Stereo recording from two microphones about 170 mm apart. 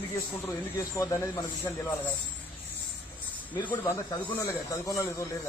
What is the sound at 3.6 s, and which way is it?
A man's voice, 10° left (ahead or behind).